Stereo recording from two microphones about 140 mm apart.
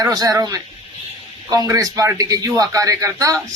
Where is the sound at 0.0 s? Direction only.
25° right (ahead or behind).